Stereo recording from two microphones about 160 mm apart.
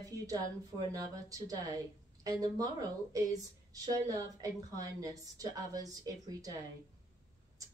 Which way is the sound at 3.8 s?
25° right (ahead or behind).